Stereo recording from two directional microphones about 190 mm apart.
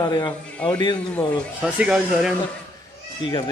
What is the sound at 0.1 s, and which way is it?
Speech, 25° left (ahead or behind).